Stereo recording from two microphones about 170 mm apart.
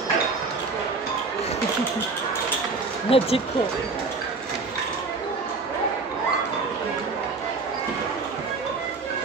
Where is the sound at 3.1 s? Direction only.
35° left (ahead or behind).